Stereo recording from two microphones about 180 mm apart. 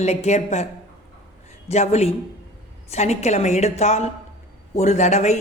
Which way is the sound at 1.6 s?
35° left (ahead or behind).